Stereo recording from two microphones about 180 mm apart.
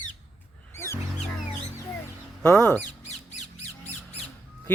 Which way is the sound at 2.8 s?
40° left (ahead or behind).